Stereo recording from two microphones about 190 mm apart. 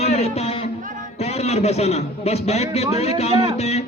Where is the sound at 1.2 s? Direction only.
35° left (ahead or behind).